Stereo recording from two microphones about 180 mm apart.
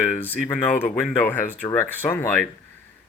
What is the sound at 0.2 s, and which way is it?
Speech, 10° left (ahead or behind).